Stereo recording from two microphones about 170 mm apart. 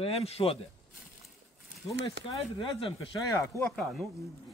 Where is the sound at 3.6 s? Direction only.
Centre (ahead or behind).